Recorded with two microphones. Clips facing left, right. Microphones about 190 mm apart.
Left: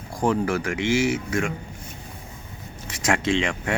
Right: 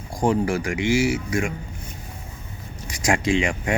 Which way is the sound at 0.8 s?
10° right (ahead or behind).